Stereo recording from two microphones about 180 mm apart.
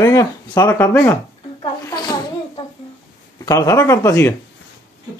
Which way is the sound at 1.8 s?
20° left (ahead or behind).